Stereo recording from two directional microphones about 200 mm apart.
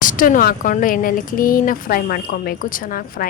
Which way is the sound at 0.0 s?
40° left (ahead or behind).